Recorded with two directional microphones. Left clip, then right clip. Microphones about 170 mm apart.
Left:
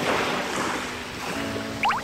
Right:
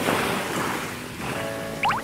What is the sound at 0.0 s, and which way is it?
Waves, 65° right (ahead or behind).